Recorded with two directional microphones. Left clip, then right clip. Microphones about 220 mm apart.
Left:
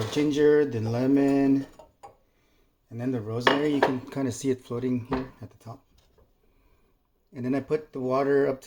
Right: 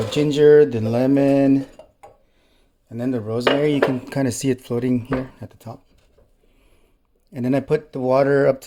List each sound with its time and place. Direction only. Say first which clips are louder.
0.1 s speech: right 8 dB; 50° right (ahead or behind)
2.9 s speech: right 7 dB; 45° right (ahead or behind)
7.3 s speech: right 8 dB; 50° right (ahead or behind)